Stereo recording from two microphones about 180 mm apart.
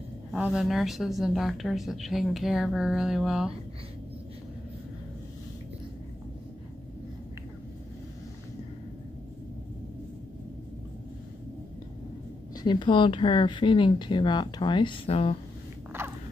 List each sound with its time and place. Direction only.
0.3 s speech: 5° right (ahead or behind)
12.6 s speech: 25° left (ahead or behind)